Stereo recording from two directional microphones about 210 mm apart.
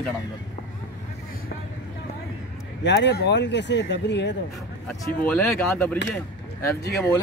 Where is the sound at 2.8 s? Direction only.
55° left (ahead or behind).